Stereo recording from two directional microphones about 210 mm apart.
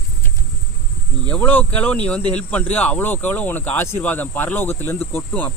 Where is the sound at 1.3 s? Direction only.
10° left (ahead or behind).